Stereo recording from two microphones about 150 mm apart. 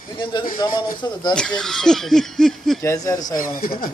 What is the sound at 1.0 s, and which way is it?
Speech, 30° left (ahead or behind).